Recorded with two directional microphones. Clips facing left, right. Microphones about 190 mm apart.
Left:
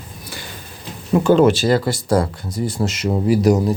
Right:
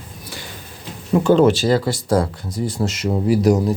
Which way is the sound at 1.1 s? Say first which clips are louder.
Even; 10° left (ahead or behind).